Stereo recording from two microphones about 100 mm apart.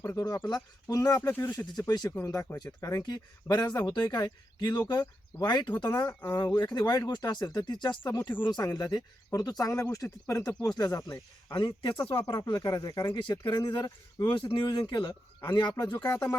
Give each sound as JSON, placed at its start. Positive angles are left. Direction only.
{"t": 0.0, "sound": "speech", "side_deg": 30}
{"t": 1.3, "sound": "speech", "side_deg": 20}
{"t": 1.9, "sound": "speech", "side_deg": 40}
{"t": 3.4, "sound": "speech", "side_deg": 45}
{"t": 12.2, "sound": "speech", "side_deg": 45}
{"t": 13.1, "sound": "speech", "side_deg": 50}
{"t": 14.3, "sound": "speech", "side_deg": 55}